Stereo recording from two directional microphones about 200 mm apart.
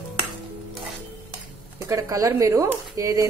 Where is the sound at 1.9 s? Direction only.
15° right (ahead or behind).